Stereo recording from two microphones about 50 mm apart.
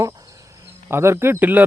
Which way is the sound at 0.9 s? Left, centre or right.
Right.